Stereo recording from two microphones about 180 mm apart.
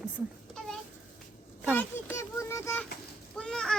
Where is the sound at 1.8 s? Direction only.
15° left (ahead or behind).